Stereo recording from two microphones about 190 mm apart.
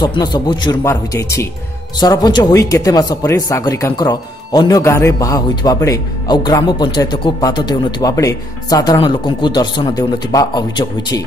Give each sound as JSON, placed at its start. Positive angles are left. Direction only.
{"t": 0.0, "sound": "speech", "side_deg": 25}